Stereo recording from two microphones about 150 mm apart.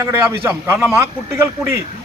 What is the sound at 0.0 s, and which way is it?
Speech, 15° right (ahead or behind).